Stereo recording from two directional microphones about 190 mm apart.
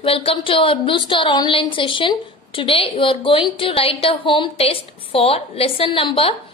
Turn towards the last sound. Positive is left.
turn(degrees=30)  # may be behind; listen again after turning